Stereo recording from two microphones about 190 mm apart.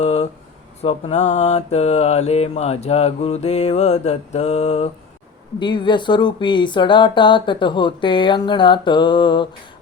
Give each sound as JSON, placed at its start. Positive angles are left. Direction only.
{"t": 0.0, "sound": "a sound", "side_deg": 35}
{"t": 0.8, "sound": "mantra", "side_deg": 35}
{"t": 5.5, "sound": "speech", "side_deg": 25}